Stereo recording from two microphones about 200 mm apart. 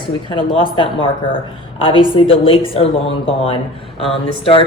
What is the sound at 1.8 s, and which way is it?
Speech, 25° left (ahead or behind).